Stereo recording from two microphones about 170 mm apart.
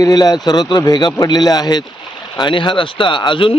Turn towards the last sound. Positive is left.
turn(degrees=30)  # may be behind; listen again after turning